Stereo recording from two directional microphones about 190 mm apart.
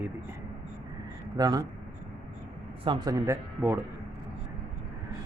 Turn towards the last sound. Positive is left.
turn(degrees=-15)  # may be behind; listen again after turning